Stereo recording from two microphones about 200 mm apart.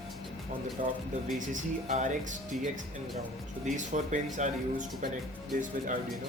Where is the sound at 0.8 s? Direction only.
40° right (ahead or behind).